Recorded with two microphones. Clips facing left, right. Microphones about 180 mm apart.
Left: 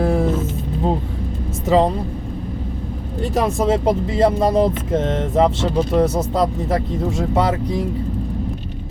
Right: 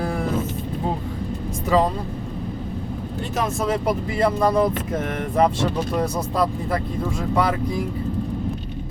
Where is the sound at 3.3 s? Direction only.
35° left (ahead or behind).